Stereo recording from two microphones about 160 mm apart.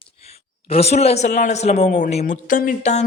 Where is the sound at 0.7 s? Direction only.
40° left (ahead or behind).